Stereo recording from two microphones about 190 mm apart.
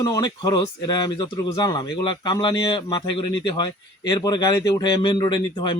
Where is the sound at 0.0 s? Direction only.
20° left (ahead or behind).